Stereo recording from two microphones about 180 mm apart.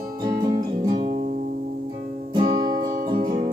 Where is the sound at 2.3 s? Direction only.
25° right (ahead or behind).